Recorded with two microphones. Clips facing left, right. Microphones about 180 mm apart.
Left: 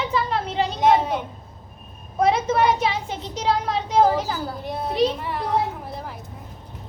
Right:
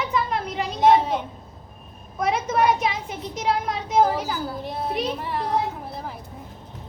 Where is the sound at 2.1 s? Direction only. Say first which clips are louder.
Left 3 dB; 30° left (ahead or behind).